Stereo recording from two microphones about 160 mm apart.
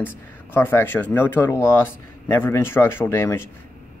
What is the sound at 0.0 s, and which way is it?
Speech, 15° left (ahead or behind).